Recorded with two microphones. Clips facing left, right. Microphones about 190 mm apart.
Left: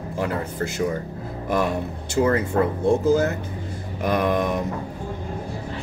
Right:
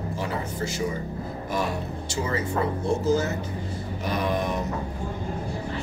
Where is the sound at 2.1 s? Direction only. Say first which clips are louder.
Left 8 dB; 60° left (ahead or behind).